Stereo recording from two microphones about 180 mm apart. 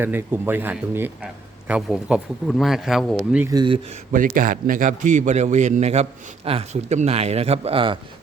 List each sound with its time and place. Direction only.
0.0 s a man's voice: 10° right (ahead or behind)
3.5 s speech: 25° right (ahead or behind)
4.1 s a man's voice: 50° right (ahead or behind); by 7.9 s 30° right (ahead or behind)